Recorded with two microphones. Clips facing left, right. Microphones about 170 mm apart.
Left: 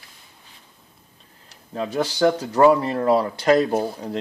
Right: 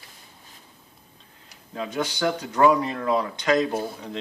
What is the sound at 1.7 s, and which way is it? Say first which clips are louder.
Speech: left 4 dB; 35° left (ahead or behind).